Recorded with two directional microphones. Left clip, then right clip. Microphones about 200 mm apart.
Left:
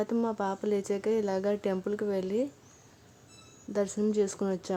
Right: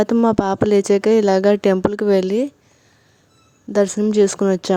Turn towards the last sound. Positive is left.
turn(degrees=-45)  # may be behind; listen again after turning